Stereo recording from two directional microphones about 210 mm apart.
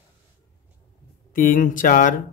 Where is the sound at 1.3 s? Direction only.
40° left (ahead or behind).